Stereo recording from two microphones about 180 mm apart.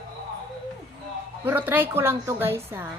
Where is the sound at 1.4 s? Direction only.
10° right (ahead or behind).